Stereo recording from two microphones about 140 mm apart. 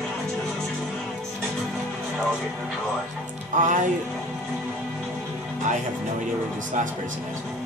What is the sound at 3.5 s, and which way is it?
Speech, 65° right (ahead or behind).